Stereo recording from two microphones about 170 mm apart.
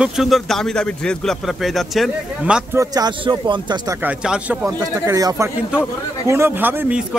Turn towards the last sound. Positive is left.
turn(degrees=-10)  # may be behind; listen again after turning